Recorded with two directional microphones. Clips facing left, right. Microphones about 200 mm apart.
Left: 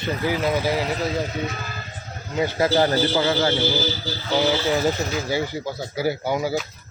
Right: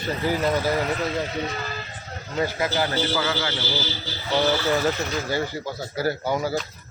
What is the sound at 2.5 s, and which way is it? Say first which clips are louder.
A man's voice: left 10 dB; 35° left (ahead or behind).